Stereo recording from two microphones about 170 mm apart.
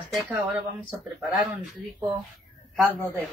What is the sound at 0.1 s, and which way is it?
Speech, centre (ahead or behind).